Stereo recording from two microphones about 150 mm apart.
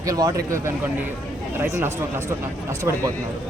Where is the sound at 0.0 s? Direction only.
25° right (ahead or behind).